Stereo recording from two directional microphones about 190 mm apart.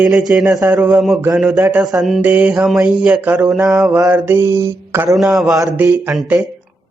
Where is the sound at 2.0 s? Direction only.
Centre (ahead or behind).